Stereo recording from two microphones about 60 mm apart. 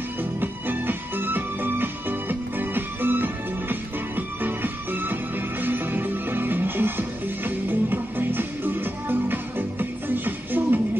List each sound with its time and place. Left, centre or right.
0.2 s music: right